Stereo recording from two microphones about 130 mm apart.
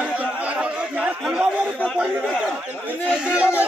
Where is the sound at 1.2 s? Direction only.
5° right (ahead or behind).